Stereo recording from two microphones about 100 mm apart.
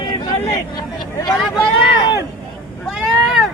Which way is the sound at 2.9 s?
5° right (ahead or behind).